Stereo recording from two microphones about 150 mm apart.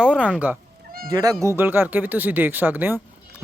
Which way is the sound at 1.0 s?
25° right (ahead or behind).